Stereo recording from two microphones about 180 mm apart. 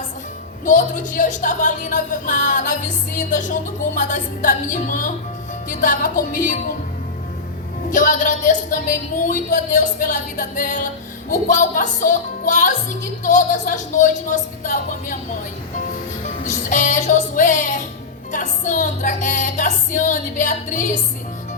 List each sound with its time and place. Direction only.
0.6 s a woman's voice: 45° left (ahead or behind)
7.9 s a woman's voice: 45° left (ahead or behind)
16.4 s a woman's voice: 45° left (ahead or behind)